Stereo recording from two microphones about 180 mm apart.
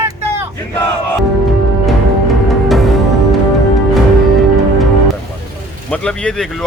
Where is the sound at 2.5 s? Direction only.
Centre (ahead or behind).